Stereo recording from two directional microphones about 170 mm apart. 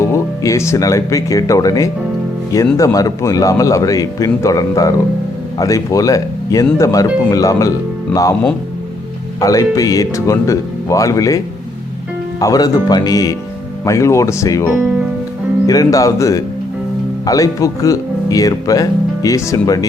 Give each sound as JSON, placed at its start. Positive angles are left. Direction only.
{"t": 0.0, "sound": "speech", "side_deg": 15}
{"t": 9.4, "sound": "speech", "side_deg": 20}
{"t": 12.4, "sound": "speech", "side_deg": 20}